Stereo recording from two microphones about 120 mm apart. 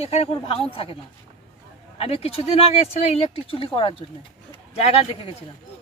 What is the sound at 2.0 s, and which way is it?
Speech, 55° left (ahead or behind).